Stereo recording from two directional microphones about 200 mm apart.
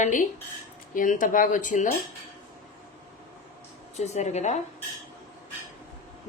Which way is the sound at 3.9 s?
35° left (ahead or behind).